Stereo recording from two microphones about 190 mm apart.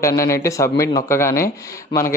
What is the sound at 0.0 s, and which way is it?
A man's voice, 15° left (ahead or behind).